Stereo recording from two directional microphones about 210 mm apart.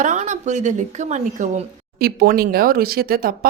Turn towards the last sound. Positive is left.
turn(degrees=-45)  # may be behind; listen again after turning